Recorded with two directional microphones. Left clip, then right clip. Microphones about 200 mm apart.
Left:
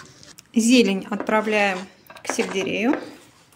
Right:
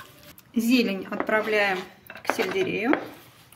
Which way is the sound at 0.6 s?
45° left (ahead or behind).